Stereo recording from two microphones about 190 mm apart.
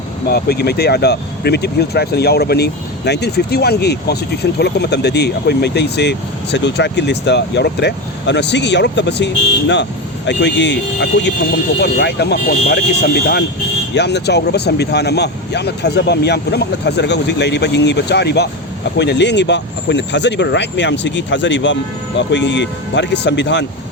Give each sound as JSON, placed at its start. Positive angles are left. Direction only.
{"t": 0.3, "sound": "speech", "side_deg": 55}